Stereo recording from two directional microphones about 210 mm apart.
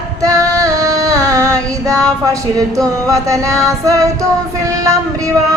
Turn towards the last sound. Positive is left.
turn(degrees=-15)  # may be behind; listen again after turning